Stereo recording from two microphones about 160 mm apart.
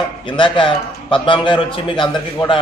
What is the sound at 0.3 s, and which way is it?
A man's voice, 30° left (ahead or behind).